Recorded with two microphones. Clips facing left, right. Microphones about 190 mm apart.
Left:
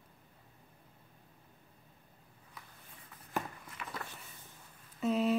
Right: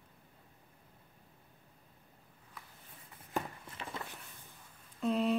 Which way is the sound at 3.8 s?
30° right (ahead or behind).